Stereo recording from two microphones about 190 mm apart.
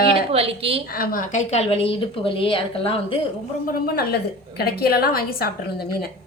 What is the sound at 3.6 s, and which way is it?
A woman's voice, 50° left (ahead or behind).